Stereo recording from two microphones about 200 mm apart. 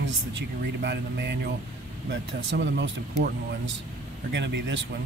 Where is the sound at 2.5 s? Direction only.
60° right (ahead or behind).